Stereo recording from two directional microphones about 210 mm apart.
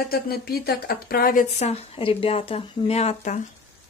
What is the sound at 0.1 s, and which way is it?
Speech, 45° left (ahead or behind).